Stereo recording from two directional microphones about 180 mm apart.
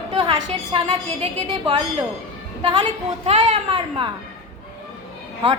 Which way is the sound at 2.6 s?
25° right (ahead or behind).